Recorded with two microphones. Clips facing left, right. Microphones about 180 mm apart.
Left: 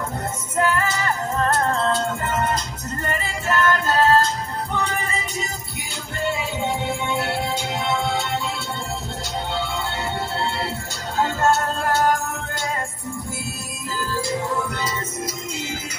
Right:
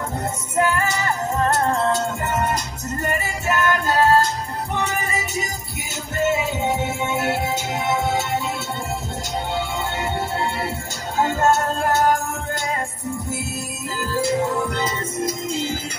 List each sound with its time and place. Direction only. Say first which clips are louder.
0.6 s music: right 1 dB; 15° right (ahead or behind)
7.2 s music: right 2 dB; 10° right (ahead or behind)
11.1 s music: right 1 dB; 15° right (ahead or behind)